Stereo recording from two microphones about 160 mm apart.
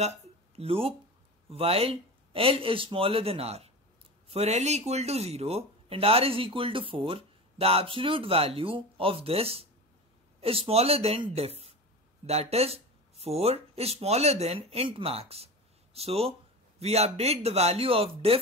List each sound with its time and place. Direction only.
0.6 s speech: 35° right (ahead or behind)